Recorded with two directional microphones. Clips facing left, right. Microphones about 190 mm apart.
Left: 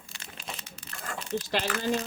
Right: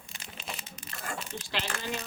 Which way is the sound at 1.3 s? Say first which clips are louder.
Left 11 dB; 40° left (ahead or behind).